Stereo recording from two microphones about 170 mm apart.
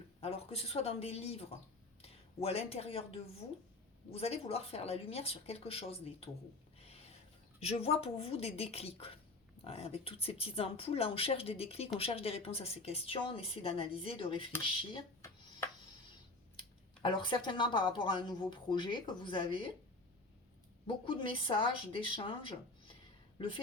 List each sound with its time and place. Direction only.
0.2 s a woman's voice: 35° left (ahead or behind)
7.6 s a woman's voice: 35° left (ahead or behind)
17.0 s speech: 25° left (ahead or behind)
20.8 s a woman's voice: 30° left (ahead or behind)